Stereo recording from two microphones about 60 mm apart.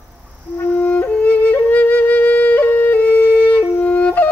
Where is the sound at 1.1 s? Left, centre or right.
Left.